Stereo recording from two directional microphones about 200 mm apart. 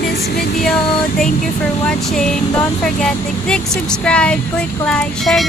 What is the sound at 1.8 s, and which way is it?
Speech, 5° left (ahead or behind).